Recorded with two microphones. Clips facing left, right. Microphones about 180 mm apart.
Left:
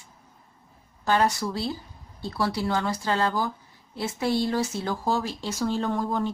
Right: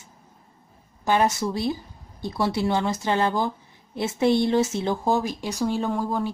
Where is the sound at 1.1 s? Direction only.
20° right (ahead or behind).